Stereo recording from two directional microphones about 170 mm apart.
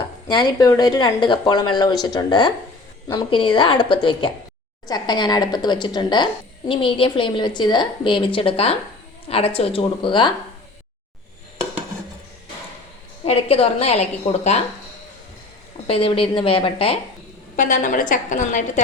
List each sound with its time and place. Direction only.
0.3 s a woman's voice: 25° left (ahead or behind)
13.2 s a woman's voice: 35° left (ahead or behind)
15.9 s a woman's voice: 35° left (ahead or behind)
17.6 s a woman's voice: 50° left (ahead or behind)